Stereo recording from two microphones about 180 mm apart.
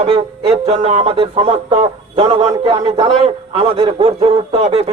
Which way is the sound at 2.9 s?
35° right (ahead or behind).